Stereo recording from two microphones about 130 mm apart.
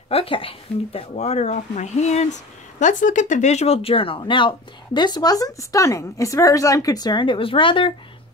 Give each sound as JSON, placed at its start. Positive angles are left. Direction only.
{"t": 0.1, "sound": "speech", "side_deg": 45}
{"t": 1.1, "sound": "speech", "side_deg": 60}
{"t": 2.8, "sound": "speech", "side_deg": 75}